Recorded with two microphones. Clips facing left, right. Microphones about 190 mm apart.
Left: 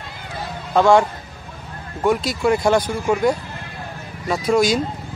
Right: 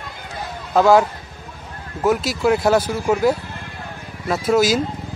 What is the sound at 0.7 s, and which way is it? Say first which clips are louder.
Speech: right 1 dB; 5° right (ahead or behind).